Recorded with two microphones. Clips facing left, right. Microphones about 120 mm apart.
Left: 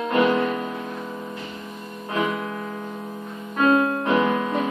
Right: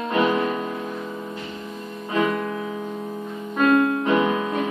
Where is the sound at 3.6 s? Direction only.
25° left (ahead or behind).